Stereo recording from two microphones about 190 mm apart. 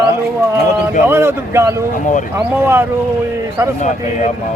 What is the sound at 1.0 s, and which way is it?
Speech, 15° right (ahead or behind).